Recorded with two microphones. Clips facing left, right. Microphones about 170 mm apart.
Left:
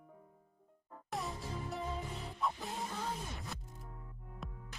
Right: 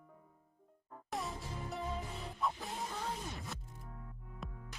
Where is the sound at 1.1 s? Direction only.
Centre (ahead or behind).